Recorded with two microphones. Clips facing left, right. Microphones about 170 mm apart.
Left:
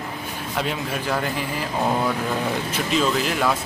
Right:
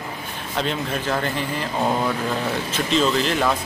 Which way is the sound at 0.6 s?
10° left (ahead or behind).